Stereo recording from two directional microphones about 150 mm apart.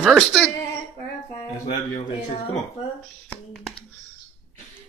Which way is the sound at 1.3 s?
30° left (ahead or behind).